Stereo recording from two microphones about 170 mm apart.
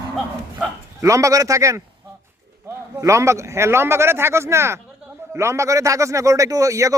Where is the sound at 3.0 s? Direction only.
15° right (ahead or behind).